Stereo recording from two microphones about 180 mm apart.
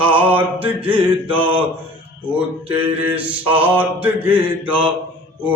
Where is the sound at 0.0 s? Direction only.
30° right (ahead or behind).